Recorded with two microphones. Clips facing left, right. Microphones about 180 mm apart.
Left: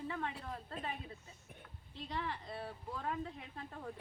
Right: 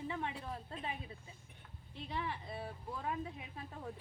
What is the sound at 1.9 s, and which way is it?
A woman's voice, 10° right (ahead or behind).